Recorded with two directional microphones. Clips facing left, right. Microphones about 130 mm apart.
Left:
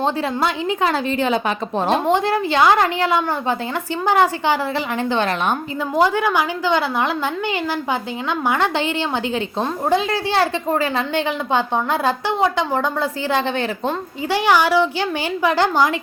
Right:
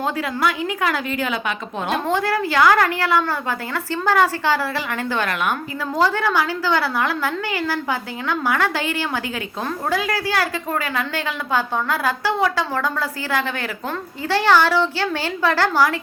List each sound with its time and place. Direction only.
0.0 s a woman's voice: 25° left (ahead or behind)
2.0 s a woman's voice: 20° left (ahead or behind)